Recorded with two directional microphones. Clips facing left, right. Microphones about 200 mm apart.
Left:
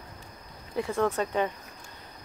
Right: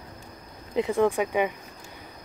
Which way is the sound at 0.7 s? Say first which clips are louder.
Right 5 dB; 15° right (ahead or behind).